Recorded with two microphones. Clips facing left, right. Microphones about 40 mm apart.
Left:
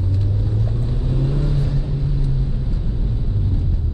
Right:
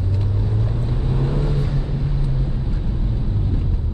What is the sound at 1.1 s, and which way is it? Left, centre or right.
Vehicle, right.